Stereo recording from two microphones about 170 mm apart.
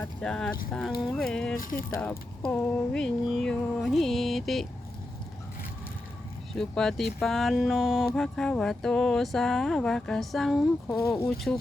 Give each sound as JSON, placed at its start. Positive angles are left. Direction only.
{"t": 0.0, "sound": "speech", "side_deg": 5}
{"t": 1.5, "sound": "speech", "side_deg": 55}
{"t": 2.0, "sound": "speech", "side_deg": 10}
{"t": 6.5, "sound": "speech", "side_deg": 5}
{"t": 10.8, "sound": "speech", "side_deg": 20}